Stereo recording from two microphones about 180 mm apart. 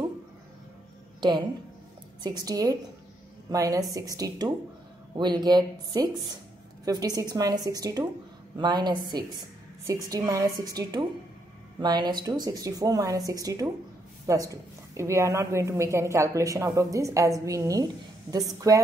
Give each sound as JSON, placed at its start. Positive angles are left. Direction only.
{"t": 2.2, "sound": "a woman's voice", "side_deg": -20}